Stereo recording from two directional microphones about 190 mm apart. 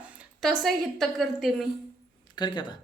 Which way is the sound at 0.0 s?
5° right (ahead or behind).